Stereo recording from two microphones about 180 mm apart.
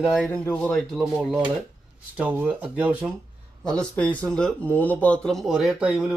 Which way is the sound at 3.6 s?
5° left (ahead or behind).